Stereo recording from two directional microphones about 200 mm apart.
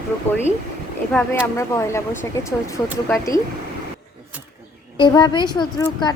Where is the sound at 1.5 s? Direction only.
15° left (ahead or behind).